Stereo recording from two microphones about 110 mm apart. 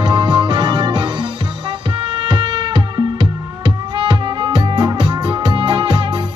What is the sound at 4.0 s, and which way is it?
Music, 45° right (ahead or behind).